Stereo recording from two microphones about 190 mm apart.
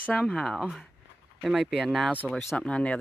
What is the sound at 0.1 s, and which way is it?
Speech, 5° left (ahead or behind).